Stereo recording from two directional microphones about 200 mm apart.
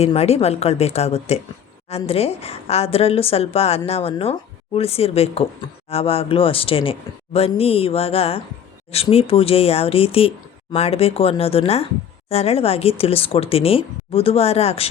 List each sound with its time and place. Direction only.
0.0 s a woman's voice: 30° left (ahead or behind)